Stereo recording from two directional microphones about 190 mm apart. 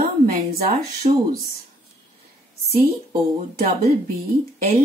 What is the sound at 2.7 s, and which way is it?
Speech, 35° right (ahead or behind).